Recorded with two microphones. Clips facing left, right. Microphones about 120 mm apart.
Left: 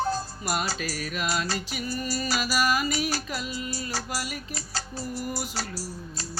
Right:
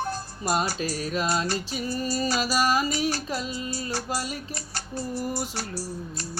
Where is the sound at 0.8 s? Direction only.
25° right (ahead or behind).